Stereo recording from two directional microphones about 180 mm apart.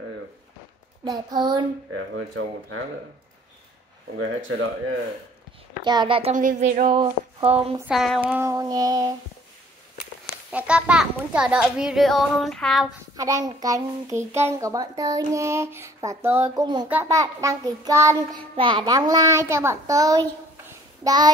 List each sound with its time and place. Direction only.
1.0 s speech: 20° right (ahead or behind)
4.4 s a man's voice: 90° right
5.9 s speech: 25° right (ahead or behind)
6.3 s a sound: 45° right (ahead or behind)
6.9 s a sound: 25° right (ahead or behind)
7.4 s speech: 35° right (ahead or behind)
7.9 s a child's voice: centre (ahead or behind); by 9.1 s 20° right (ahead or behind)
10.5 s a child's voice: 5° right (ahead or behind)
13.1 s a child's voice: 20° right (ahead or behind)